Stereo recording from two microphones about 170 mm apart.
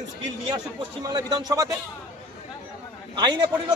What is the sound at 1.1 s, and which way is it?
Speech, 25° right (ahead or behind).